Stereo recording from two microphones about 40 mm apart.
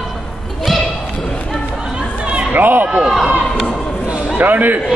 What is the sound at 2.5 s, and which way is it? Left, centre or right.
Speech, right.